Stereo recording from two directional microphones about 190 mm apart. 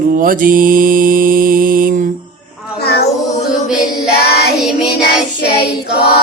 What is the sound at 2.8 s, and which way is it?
Child singing, 60° left (ahead or behind).